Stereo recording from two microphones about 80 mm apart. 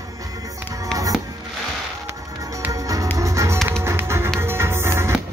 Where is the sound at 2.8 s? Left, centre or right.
Right.